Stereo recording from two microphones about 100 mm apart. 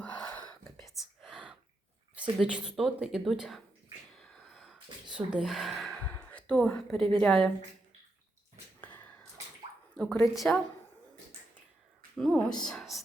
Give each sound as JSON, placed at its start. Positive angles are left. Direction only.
{"t": 0.0, "sound": "whispering", "side_deg": 10}
{"t": 0.9, "sound": "whispering", "side_deg": 0}
{"t": 2.4, "sound": "speech", "side_deg": -5}
{"t": 4.2, "sound": "a sound", "side_deg": 0}
{"t": 5.1, "sound": "speech", "side_deg": -10}
{"t": 6.1, "sound": "a sound", "side_deg": 10}
{"t": 7.2, "sound": "a woman's voice", "side_deg": 10}
{"t": 8.8, "sound": "a sound", "side_deg": 15}
{"t": 10.0, "sound": "a woman's voice", "side_deg": 10}
{"t": 12.1, "sound": "speech", "side_deg": 5}